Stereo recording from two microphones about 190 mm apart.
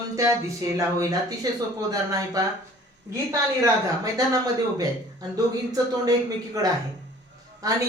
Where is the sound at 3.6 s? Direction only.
20° right (ahead or behind).